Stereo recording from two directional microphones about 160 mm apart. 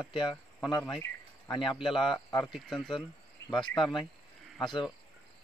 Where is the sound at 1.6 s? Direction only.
Centre (ahead or behind).